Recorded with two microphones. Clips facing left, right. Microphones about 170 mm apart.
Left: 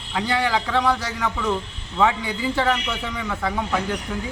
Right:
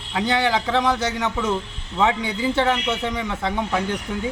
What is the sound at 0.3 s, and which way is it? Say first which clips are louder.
A man's voice: right 2 dB; 25° right (ahead or behind).